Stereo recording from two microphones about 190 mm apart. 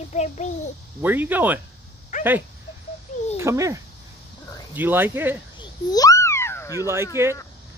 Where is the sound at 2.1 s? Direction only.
40° left (ahead or behind).